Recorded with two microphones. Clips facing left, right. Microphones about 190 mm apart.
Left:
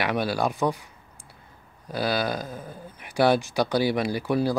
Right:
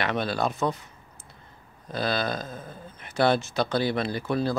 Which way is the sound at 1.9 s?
10° left (ahead or behind).